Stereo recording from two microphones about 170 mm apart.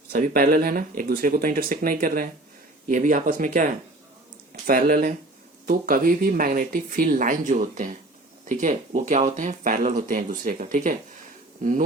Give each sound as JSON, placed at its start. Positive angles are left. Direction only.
{"t": 0.1, "sound": "speech", "side_deg": -50}